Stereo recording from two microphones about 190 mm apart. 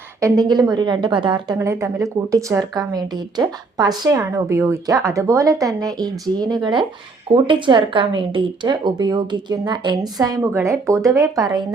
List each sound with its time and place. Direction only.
0.2 s a woman's voice: 15° right (ahead or behind)